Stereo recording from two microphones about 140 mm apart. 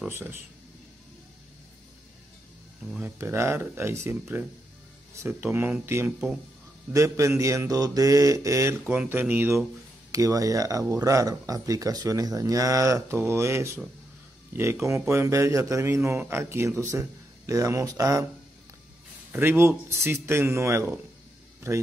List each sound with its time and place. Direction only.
0.1 s speech: 15° right (ahead or behind)
3.0 s speech: 15° right (ahead or behind)
8.8 s speech: 10° right (ahead or behind)
10.1 s speech: 25° right (ahead or behind)
19.3 s speech: 15° right (ahead or behind)